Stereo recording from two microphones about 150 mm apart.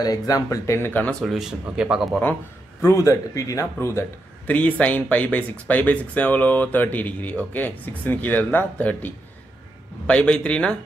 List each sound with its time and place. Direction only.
0.0 s speech: 25° left (ahead or behind)
1.2 s speech: centre (ahead or behind)
2.8 s speech: 20° left (ahead or behind)